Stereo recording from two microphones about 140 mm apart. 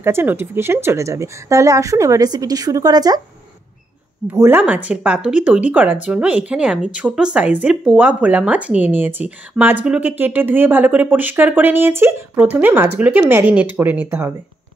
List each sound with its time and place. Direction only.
0.0 s speech: 15° right (ahead or behind)
4.3 s speech: 15° right (ahead or behind)